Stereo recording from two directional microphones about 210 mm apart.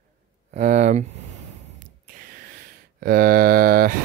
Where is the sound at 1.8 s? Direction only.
40° right (ahead or behind).